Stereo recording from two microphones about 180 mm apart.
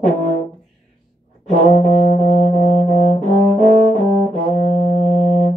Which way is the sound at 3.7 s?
35° right (ahead or behind).